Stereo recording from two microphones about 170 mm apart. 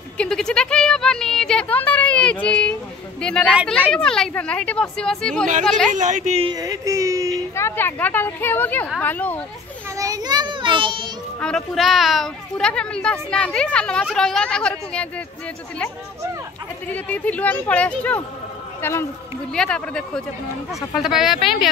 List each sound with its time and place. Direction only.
0.2 s a woman's voice: 5° left (ahead or behind)
5.9 s a woman's voice: 45° right (ahead or behind)
6.4 s a sound: 25° right (ahead or behind)
7.5 s speech: 15° left (ahead or behind)
9.9 s a child's voice: 20° right (ahead or behind)
11.3 s a woman's voice: 5° left (ahead or behind)
16.8 s a woman's voice: 10° left (ahead or behind)